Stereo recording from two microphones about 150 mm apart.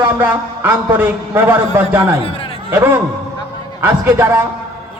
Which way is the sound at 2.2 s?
40° left (ahead or behind).